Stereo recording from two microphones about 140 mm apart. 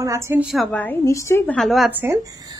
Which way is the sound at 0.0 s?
25° right (ahead or behind).